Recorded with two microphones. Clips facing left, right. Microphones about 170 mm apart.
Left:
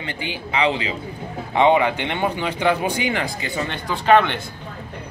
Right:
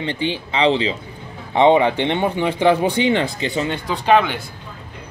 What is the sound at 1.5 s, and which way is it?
Speech, 20° right (ahead or behind).